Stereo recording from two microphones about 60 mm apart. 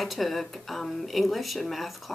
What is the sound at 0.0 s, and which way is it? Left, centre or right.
Speech, centre.